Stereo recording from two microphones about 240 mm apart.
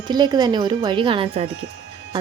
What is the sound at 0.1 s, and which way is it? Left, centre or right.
Speech, centre.